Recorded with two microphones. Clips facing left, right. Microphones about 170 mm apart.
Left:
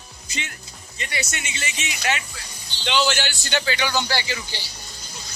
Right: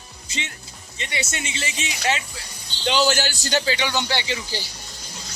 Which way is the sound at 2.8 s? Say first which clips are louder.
Right 2 dB; 40° right (ahead or behind).